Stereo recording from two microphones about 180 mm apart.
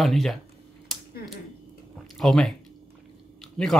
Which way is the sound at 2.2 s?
Centre (ahead or behind).